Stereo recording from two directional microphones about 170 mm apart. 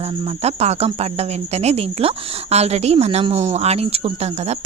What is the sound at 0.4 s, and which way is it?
A woman's voice, 40° right (ahead or behind).